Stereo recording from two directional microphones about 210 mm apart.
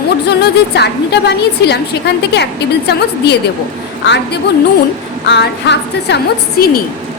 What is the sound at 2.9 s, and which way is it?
A woman's voice, 50° left (ahead or behind).